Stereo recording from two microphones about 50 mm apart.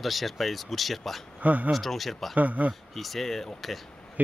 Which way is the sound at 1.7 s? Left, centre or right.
Centre.